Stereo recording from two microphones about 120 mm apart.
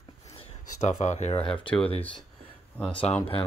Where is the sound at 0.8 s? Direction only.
75° left (ahead or behind).